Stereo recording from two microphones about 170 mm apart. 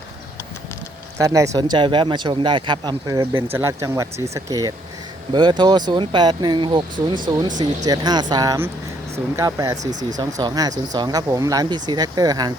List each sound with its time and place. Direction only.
1.2 s speech: 20° right (ahead or behind)